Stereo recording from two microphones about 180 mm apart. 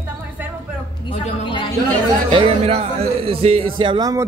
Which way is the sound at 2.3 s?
30° right (ahead or behind).